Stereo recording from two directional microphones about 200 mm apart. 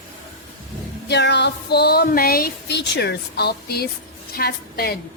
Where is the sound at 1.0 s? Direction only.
60° left (ahead or behind).